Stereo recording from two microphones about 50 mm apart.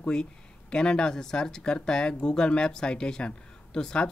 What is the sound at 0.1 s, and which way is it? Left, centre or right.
Speech, centre.